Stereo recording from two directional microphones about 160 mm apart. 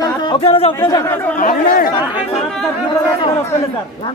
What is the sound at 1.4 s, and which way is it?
Speech, 60° left (ahead or behind).